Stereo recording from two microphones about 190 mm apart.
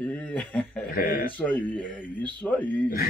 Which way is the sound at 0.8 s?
45° left (ahead or behind).